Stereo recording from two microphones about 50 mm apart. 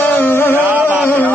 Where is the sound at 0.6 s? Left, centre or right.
Right.